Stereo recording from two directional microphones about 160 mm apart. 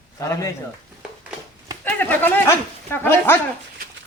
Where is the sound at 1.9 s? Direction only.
10° left (ahead or behind).